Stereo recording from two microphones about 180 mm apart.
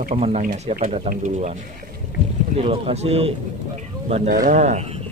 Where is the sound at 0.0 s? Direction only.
35° right (ahead or behind).